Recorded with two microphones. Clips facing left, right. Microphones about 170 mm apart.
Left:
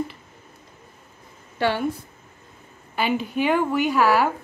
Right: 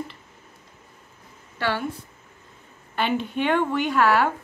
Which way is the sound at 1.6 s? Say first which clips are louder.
Left 4 dB; 20° left (ahead or behind).